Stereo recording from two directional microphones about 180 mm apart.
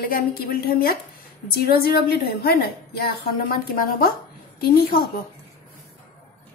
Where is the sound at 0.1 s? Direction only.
55° left (ahead or behind).